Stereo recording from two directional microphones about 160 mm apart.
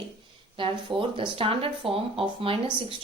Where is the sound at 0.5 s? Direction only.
30° right (ahead or behind).